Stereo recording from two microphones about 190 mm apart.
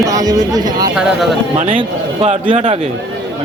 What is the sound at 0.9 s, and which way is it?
Speech, centre (ahead or behind).